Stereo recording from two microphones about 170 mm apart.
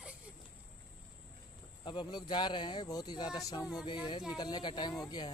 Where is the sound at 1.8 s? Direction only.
25° left (ahead or behind).